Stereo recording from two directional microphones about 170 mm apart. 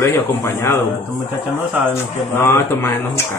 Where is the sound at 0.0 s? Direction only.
15° left (ahead or behind).